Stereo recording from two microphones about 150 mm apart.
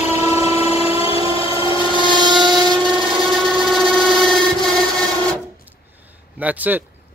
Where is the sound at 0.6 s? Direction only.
45° left (ahead or behind).